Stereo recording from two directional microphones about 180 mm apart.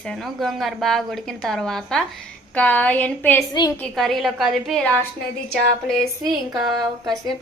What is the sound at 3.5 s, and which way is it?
Speech, 25° left (ahead or behind).